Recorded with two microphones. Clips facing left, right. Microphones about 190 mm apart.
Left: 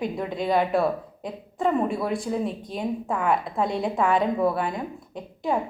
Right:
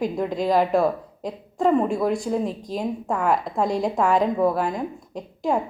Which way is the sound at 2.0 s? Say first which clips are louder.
Right 3 dB; centre (ahead or behind).